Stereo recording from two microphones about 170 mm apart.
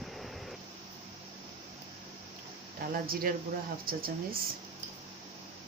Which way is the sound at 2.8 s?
60° right (ahead or behind).